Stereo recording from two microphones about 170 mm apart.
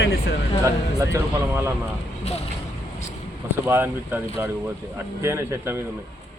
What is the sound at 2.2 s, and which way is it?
Speech, 40° left (ahead or behind).